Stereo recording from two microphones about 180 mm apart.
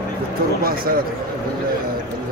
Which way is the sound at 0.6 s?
55° right (ahead or behind).